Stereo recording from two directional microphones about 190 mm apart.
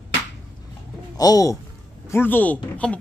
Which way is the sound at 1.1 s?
20° left (ahead or behind).